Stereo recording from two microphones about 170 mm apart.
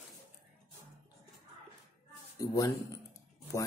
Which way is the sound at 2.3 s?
20° left (ahead or behind).